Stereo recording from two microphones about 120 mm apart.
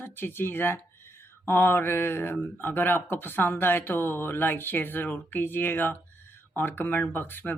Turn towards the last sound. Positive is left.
turn(degrees=15)  # may be behind; listen again after turning